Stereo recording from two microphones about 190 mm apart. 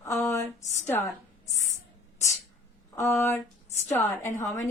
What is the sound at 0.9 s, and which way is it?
Speech, 15° left (ahead or behind).